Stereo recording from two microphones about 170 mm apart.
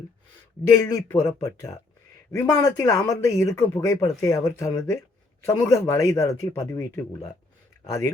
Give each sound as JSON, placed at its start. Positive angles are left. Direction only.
{"t": 0.7, "sound": "speech", "side_deg": 20}